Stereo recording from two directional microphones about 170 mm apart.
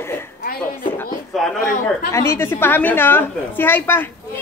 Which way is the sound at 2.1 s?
15° left (ahead or behind).